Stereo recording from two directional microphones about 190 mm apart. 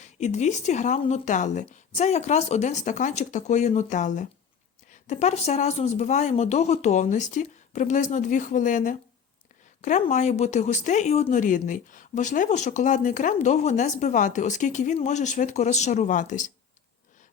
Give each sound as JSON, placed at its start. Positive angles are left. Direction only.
{"t": 0.0, "sound": "speech", "side_deg": 40}